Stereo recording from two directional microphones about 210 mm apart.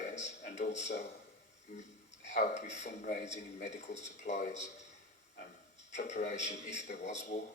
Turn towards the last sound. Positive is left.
turn(degrees=35)  # may be behind; listen again after turning